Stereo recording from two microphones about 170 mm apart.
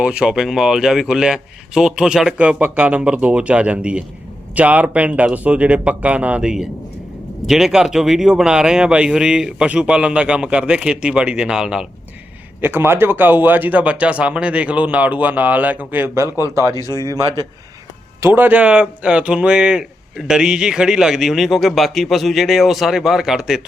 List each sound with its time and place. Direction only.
0.0 s speech: 5° right (ahead or behind); by 17.4 s 25° right (ahead or behind)
18.2 s speech: 10° right (ahead or behind)